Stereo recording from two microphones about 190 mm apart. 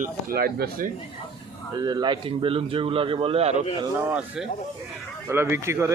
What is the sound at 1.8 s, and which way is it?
Speech, 20° right (ahead or behind).